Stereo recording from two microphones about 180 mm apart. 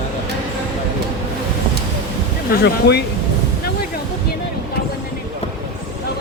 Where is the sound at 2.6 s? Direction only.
65° left (ahead or behind).